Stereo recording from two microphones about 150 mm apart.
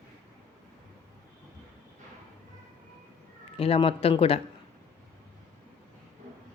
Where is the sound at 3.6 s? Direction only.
40° left (ahead or behind).